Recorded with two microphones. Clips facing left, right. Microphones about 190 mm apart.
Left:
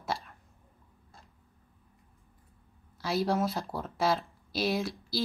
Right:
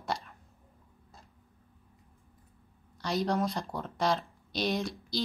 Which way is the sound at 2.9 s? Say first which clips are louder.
Left 1 dB; 5° left (ahead or behind).